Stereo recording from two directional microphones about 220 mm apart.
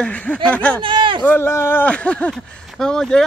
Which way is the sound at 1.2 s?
10° left (ahead or behind).